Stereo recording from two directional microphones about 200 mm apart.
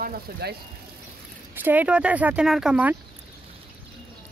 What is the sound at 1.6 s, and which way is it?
Speech, 5° right (ahead or behind).